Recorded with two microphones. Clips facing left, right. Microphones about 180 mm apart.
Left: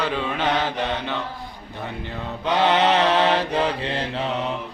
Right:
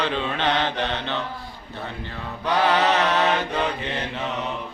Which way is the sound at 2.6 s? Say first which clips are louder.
Left 2 dB; 25° left (ahead or behind).